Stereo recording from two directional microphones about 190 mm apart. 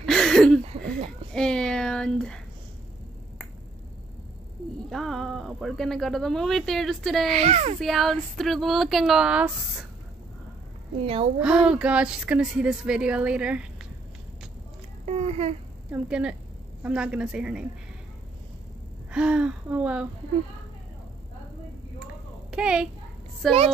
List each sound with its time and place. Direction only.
0.0 s a sound: centre (ahead or behind)
1.3 s speech: 5° left (ahead or behind)
4.8 s speech: centre (ahead or behind)
7.3 s speech: 35° right (ahead or behind)
7.8 s speech: centre (ahead or behind)
11.3 s speech: 5° right (ahead or behind)
15.0 s speech: 35° right (ahead or behind)
15.9 s speech: 5° right (ahead or behind)
19.0 s speech: 5° right (ahead or behind)
22.0 s a sound: 5° right (ahead or behind)
23.4 s speech: centre (ahead or behind)